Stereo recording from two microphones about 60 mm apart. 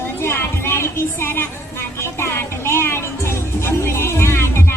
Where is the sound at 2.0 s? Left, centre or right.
Left.